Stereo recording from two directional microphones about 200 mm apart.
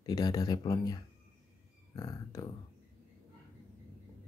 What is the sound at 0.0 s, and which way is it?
Speech, 20° left (ahead or behind).